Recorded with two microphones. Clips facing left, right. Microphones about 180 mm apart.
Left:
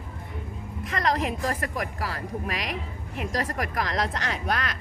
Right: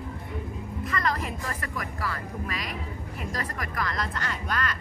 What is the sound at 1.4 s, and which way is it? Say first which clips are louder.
Speech: left 5 dB; 35° left (ahead or behind).